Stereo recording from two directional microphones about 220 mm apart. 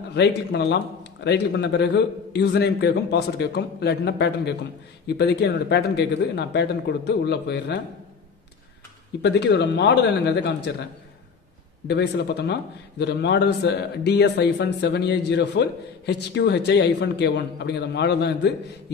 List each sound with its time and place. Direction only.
0.1 s speech: 50° left (ahead or behind)
9.2 s speech: 50° left (ahead or behind)
11.9 s speech: 50° left (ahead or behind)